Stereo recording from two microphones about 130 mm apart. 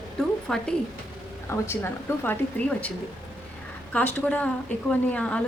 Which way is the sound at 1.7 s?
20° left (ahead or behind).